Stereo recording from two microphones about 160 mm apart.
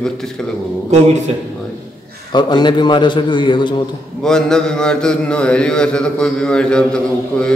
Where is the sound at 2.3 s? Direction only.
25° left (ahead or behind).